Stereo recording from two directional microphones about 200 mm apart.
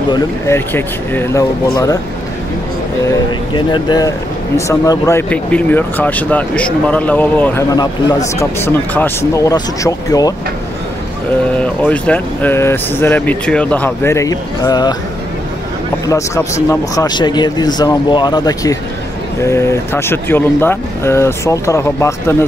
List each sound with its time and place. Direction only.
0.1 s speech: 10° left (ahead or behind)
3.5 s speech: 20° left (ahead or behind)
7.7 s speech: 20° left (ahead or behind)
11.6 s speech: 5° left (ahead or behind)
16.1 s speech: 15° left (ahead or behind)